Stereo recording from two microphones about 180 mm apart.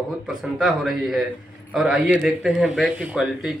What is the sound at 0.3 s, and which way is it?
A man's voice, 5° right (ahead or behind).